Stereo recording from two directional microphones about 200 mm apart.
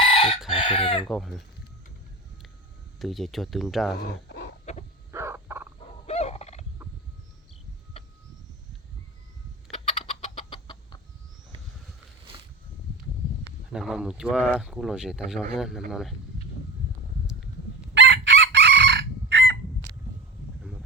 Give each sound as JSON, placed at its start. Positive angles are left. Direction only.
{"t": 0.0, "sound": "chicken", "side_deg": 30}
{"t": 1.0, "sound": "speech", "side_deg": 0}
{"t": 3.0, "sound": "speech", "side_deg": 0}
{"t": 3.9, "sound": "dog", "side_deg": 55}
{"t": 5.1, "sound": "frog", "side_deg": -10}
{"t": 6.1, "sound": "fowl", "side_deg": 30}
{"t": 10.0, "sound": "chicken", "side_deg": 30}
{"t": 13.7, "sound": "speech", "side_deg": -5}
{"t": 17.9, "sound": "chicken", "side_deg": -65}